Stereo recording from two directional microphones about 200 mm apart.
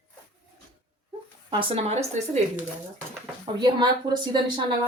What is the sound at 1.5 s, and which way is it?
Speech, 25° right (ahead or behind).